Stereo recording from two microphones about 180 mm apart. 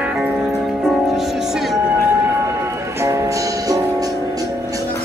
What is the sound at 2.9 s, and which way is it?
Music, 15° right (ahead or behind).